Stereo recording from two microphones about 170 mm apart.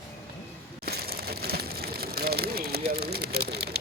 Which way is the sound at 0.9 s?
65° right (ahead or behind).